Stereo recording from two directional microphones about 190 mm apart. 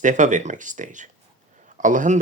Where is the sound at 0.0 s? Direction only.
40° right (ahead or behind).